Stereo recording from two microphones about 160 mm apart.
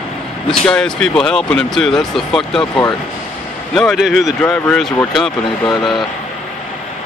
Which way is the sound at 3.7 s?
Centre (ahead or behind).